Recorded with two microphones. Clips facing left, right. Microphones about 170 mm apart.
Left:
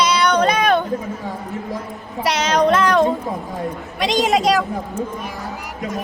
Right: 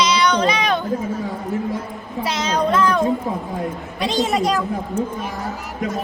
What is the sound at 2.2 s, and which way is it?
A woman's voice, 75° left (ahead or behind).